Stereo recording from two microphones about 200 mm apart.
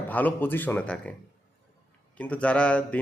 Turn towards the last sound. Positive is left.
turn(degrees=5)  # may be behind; listen again after turning